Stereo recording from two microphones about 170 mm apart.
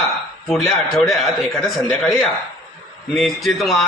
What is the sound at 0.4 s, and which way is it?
A man's voice, centre (ahead or behind).